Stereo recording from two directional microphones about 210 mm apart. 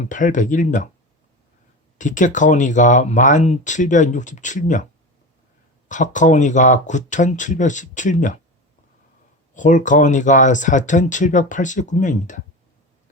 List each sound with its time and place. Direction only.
0.0 s speech: 35° left (ahead or behind)
2.0 s speech: 35° left (ahead or behind)
5.9 s speech: 35° left (ahead or behind)
9.6 s speech: 35° left (ahead or behind)